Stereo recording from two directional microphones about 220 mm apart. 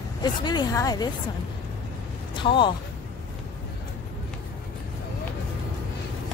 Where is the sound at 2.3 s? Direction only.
20° left (ahead or behind).